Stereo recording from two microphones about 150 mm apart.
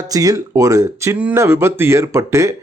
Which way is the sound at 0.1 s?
25° right (ahead or behind).